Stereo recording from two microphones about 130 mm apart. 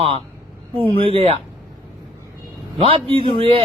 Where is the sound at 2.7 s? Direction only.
45° right (ahead or behind).